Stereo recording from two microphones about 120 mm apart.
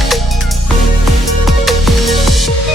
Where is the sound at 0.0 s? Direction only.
Centre (ahead or behind).